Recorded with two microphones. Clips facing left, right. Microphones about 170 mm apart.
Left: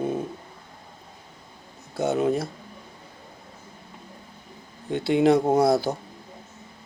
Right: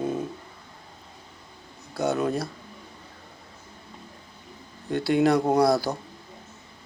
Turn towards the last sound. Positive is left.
turn(degrees=25)  # may be behind; listen again after turning